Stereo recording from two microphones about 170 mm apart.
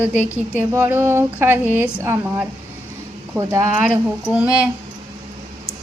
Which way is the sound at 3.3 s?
20° right (ahead or behind).